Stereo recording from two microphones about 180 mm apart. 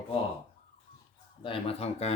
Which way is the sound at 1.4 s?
30° left (ahead or behind).